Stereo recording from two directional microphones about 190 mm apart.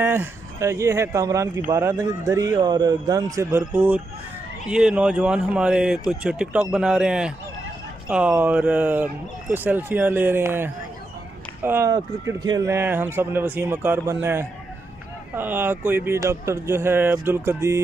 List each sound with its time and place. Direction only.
0.0 s speech: 10° right (ahead or behind)